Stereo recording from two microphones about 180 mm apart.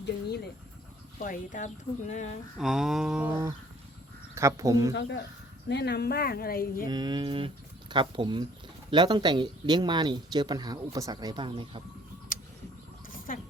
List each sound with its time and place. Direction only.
1.2 s speech: 45° left (ahead or behind)
2.6 s mantra: centre (ahead or behind)
4.4 s speech: 15° right (ahead or behind)
4.9 s speech: 90° left
5.6 s speech: 70° left (ahead or behind)
6.8 s speech: 25° right (ahead or behind)
13.1 s a sound: 50° left (ahead or behind)